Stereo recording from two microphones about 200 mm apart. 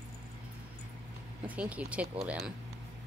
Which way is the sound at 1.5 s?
5° right (ahead or behind).